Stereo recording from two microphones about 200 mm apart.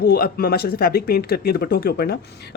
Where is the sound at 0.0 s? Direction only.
50° left (ahead or behind).